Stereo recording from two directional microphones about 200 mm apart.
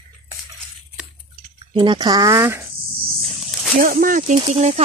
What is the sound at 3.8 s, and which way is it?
Speech, 45° right (ahead or behind).